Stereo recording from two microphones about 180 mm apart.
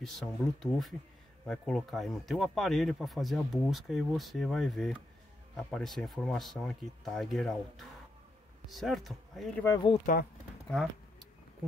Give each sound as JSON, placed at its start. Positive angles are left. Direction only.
{"t": 0.0, "sound": "speech", "side_deg": 0}
{"t": 9.7, "sound": "speech", "side_deg": 25}